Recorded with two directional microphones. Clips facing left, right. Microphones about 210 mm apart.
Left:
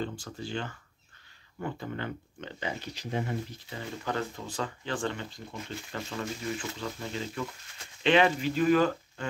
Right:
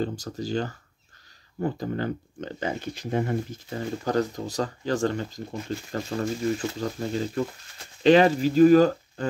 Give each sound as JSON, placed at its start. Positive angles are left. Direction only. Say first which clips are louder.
{"t": 0.0, "sound": "speech", "louder": "right 6 dB", "side_deg": -40}